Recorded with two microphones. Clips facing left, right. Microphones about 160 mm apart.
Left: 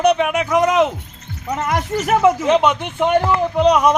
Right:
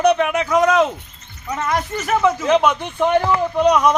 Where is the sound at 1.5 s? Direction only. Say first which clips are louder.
Left 1 dB; 20° left (ahead or behind).